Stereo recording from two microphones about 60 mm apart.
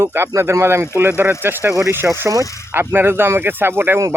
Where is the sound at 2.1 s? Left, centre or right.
Right.